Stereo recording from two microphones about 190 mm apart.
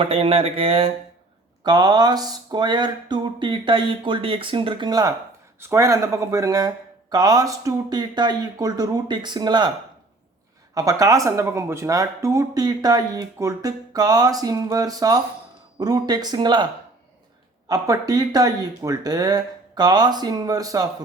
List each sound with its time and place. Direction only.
0.0 s speech: 30° right (ahead or behind)
10.8 s speech: 20° right (ahead or behind)
17.7 s speech: 20° right (ahead or behind)